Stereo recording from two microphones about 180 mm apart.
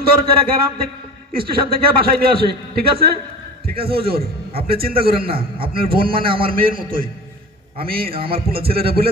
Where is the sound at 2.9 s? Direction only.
60° right (ahead or behind).